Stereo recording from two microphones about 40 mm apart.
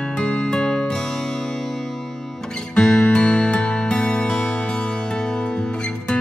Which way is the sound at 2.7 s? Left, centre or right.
Centre.